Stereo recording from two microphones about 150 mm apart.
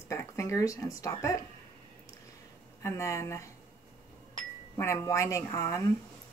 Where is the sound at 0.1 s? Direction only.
20° left (ahead or behind).